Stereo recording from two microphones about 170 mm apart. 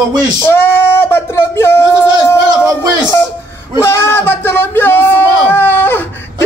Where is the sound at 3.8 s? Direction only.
15° left (ahead or behind).